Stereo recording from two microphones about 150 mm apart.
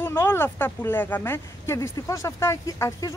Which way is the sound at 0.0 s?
15° left (ahead or behind).